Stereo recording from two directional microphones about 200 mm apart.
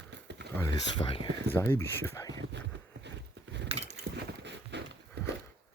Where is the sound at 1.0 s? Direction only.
25° left (ahead or behind).